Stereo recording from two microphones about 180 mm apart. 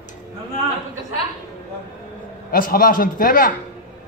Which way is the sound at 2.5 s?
55° left (ahead or behind).